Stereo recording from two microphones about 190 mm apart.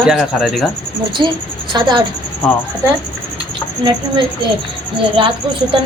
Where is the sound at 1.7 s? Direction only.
25° right (ahead or behind).